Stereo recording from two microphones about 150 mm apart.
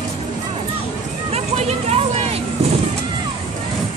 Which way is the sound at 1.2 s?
45° right (ahead or behind).